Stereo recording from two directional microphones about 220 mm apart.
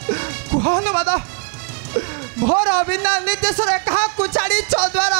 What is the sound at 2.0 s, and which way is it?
A man's voice, 25° right (ahead or behind).